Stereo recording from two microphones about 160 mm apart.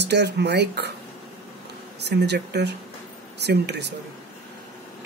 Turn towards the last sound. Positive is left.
turn(degrees=-90)